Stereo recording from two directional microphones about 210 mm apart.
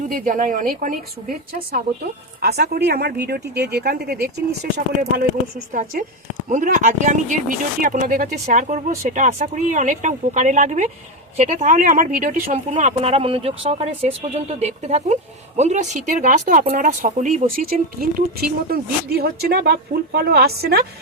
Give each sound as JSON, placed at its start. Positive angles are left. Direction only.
{"t": 0.0, "sound": "speech", "side_deg": -40}
{"t": 5.7, "sound": "speech", "side_deg": -40}